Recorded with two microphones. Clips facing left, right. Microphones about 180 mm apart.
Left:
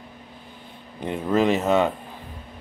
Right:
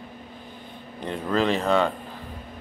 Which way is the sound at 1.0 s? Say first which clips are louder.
Left 3 dB; 15° left (ahead or behind).